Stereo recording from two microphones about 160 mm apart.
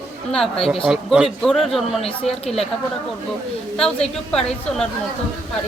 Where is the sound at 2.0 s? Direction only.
40° left (ahead or behind).